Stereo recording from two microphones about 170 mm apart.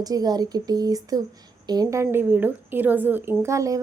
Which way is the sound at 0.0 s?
20° right (ahead or behind).